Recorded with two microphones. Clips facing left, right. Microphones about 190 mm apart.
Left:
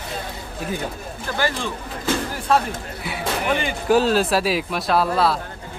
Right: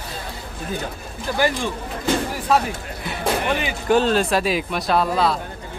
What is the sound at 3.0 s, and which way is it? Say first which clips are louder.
Music: right 3 dB; 10° left (ahead or behind).